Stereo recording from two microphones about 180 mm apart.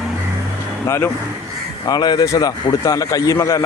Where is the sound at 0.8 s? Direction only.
15° left (ahead or behind).